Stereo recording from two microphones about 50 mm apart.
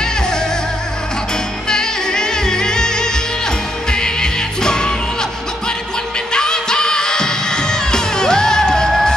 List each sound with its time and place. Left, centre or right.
0.0 s music: centre
1.7 s music: centre
6.3 s music: centre